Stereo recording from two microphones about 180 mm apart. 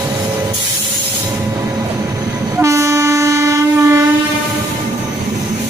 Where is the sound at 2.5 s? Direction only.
15° right (ahead or behind).